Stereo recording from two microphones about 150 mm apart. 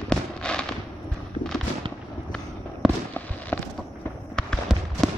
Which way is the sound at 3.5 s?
15° left (ahead or behind).